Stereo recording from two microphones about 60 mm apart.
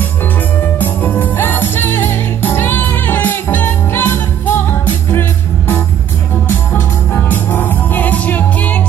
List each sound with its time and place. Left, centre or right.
0.6 s music: left
6.5 s music: left